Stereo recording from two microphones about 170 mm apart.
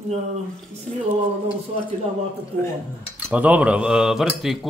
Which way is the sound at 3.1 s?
10° right (ahead or behind).